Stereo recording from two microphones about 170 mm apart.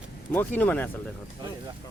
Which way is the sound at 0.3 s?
10° left (ahead or behind).